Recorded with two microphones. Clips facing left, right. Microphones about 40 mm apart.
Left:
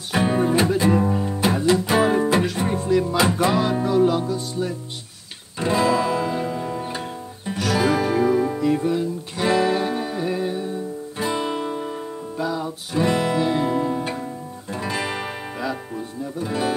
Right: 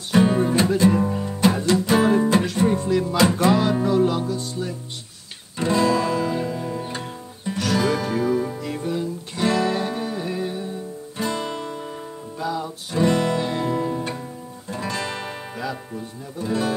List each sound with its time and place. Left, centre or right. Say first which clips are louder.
0.1 s music: right 1 dB; centre
7.5 s guitar: left 2 dB; centre
11.2 s music: left 3 dB; centre
12.4 s guitar: right 2 dB; centre
16.3 s speech: even; centre